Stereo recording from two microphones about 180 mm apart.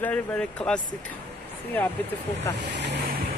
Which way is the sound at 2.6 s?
75° right (ahead or behind).